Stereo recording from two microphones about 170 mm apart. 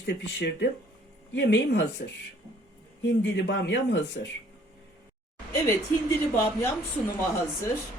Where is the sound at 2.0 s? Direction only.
60° left (ahead or behind).